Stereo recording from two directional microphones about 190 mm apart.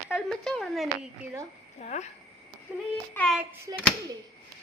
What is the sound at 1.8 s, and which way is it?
Speech, 35° left (ahead or behind).